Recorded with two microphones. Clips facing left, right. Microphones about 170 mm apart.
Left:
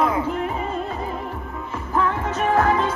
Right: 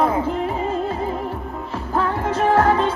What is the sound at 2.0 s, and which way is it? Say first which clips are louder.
Music: right 2 dB; 35° right (ahead or behind).